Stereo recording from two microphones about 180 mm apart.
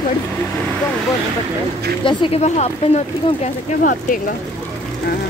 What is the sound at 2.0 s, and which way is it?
Speech, 30° left (ahead or behind).